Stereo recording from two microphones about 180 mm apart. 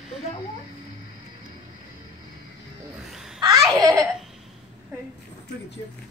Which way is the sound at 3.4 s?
20° right (ahead or behind).